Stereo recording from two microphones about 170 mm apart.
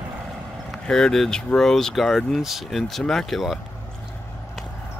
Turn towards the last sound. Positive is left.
turn(degrees=0)  # may be behind; listen again after turning